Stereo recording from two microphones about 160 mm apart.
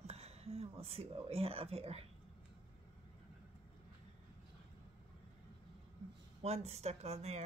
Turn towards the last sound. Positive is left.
turn(degrees=-40)  # may be behind; listen again after turning